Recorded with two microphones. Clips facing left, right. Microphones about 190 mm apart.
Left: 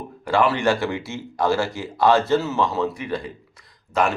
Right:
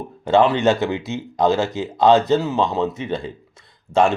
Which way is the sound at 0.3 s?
20° right (ahead or behind).